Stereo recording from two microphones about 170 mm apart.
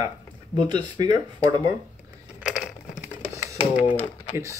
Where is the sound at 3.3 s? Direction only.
20° right (ahead or behind).